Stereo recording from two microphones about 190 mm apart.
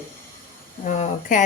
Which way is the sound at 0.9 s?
40° left (ahead or behind).